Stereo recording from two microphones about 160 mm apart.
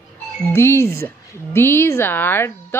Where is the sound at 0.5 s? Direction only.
15° left (ahead or behind).